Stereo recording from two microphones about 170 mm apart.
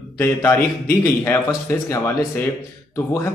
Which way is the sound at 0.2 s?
15° left (ahead or behind).